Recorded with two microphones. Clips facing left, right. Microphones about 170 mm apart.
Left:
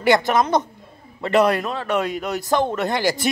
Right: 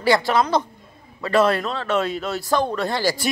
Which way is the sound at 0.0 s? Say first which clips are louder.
Left 1 dB; 20° left (ahead or behind).